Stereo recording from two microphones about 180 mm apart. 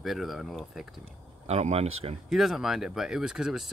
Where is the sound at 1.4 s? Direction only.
35° right (ahead or behind).